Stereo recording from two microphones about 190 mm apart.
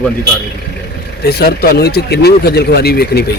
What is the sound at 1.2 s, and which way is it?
Speech, 55° left (ahead or behind).